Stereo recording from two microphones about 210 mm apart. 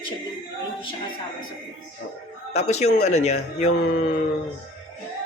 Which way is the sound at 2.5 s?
30° left (ahead or behind).